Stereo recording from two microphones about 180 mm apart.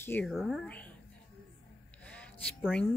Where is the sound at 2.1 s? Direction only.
5° left (ahead or behind).